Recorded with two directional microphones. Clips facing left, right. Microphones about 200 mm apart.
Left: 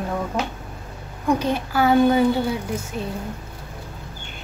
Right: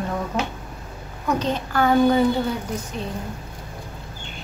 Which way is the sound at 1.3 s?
10° left (ahead or behind).